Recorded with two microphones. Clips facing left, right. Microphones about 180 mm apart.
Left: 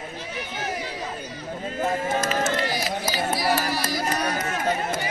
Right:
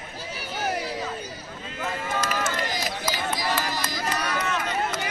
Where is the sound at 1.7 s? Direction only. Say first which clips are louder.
Left 6 dB; 45° left (ahead or behind).